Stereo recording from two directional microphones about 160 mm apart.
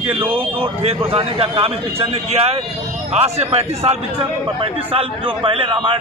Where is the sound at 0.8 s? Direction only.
35° right (ahead or behind).